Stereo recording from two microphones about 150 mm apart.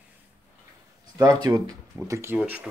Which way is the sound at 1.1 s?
25° right (ahead or behind).